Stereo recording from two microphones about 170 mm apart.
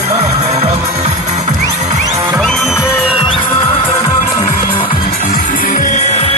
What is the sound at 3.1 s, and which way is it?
Music, 30° left (ahead or behind).